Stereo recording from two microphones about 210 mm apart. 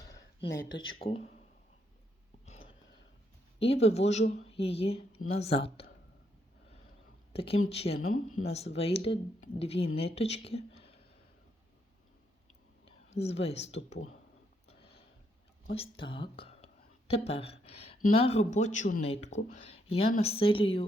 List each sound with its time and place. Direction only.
1.0 s speech: 30° left (ahead or behind)
2.5 s a sound: 25° left (ahead or behind)
3.6 s speech: 30° left (ahead or behind)
7.3 s speech: 25° left (ahead or behind)
12.8 s whispering: 30° left (ahead or behind)
13.7 s speech: 30° left (ahead or behind)
15.7 s speech: 25° left (ahead or behind)